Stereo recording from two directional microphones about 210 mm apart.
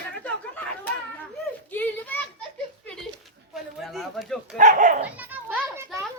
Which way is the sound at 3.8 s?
Centre (ahead or behind).